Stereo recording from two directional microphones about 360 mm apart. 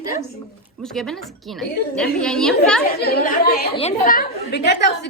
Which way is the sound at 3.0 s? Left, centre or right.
Left.